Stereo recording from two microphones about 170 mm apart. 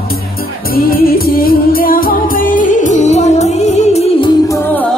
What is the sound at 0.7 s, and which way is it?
Music, 60° left (ahead or behind).